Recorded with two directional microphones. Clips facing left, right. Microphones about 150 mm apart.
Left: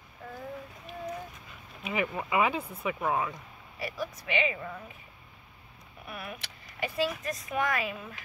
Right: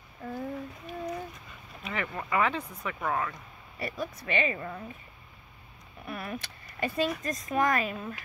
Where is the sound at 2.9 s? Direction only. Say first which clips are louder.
Left 2 dB; 10° left (ahead or behind).